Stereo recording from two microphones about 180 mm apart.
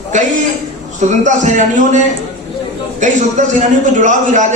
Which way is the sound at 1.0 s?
45° right (ahead or behind).